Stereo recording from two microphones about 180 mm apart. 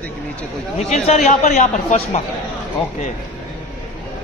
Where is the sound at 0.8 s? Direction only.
40° left (ahead or behind).